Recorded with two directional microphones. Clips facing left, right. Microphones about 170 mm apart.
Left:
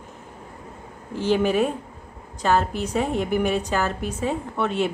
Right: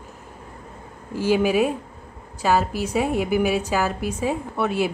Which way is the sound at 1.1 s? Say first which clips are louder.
Right 1 dB; 10° right (ahead or behind).